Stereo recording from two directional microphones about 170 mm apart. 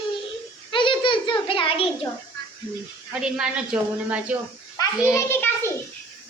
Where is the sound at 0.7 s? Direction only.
30° left (ahead or behind).